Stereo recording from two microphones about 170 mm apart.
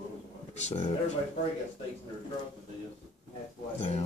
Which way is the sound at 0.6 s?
40° left (ahead or behind).